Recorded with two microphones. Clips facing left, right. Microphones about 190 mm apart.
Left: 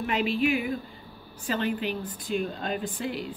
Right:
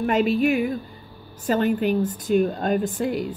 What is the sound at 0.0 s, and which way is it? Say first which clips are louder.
Speech: right 6 dB; 45° right (ahead or behind).